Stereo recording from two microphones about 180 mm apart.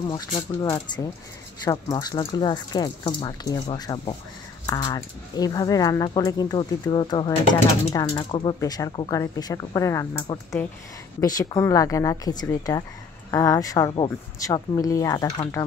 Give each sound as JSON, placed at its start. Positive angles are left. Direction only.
{"t": 0.1, "sound": "speech", "side_deg": 25}